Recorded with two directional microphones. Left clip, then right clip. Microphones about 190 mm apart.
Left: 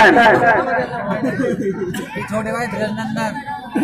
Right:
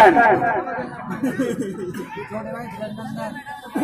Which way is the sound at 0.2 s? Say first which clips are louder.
Left 4 dB; 45° left (ahead or behind).